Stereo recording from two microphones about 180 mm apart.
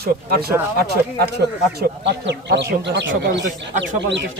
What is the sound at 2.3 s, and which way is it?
Speech, 70° right (ahead or behind).